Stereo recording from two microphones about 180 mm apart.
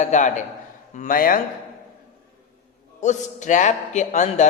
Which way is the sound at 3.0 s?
40° left (ahead or behind).